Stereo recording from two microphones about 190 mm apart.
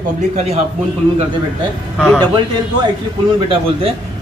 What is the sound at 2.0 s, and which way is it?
Speech, 5° left (ahead or behind).